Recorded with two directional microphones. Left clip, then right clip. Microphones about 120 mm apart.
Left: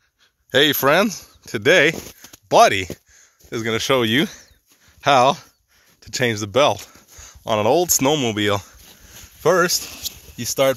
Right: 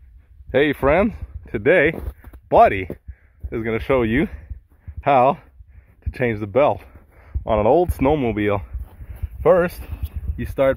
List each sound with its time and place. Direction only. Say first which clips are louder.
0.5 s speech: left 1 dB; 20° left (ahead or behind)
2.0 s a sound: left 4 dB; 10° left (ahead or behind)
2.4 s speech: even; 15° left (ahead or behind)
7.2 s speech: right 1 dB; centre (ahead or behind)
8.0 s speech: even; 15° left (ahead or behind)